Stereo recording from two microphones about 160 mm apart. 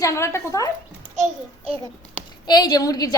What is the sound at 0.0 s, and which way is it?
Speech, 20° left (ahead or behind).